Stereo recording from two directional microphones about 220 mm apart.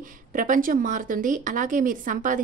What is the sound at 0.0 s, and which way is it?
A woman's voice, 35° right (ahead or behind).